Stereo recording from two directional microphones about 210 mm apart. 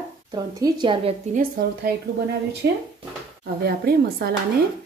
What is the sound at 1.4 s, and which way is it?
A woman's voice, 45° right (ahead or behind).